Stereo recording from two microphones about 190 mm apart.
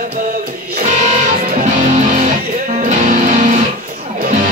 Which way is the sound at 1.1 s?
35° right (ahead or behind).